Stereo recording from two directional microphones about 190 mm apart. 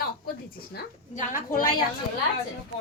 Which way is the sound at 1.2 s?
45° left (ahead or behind).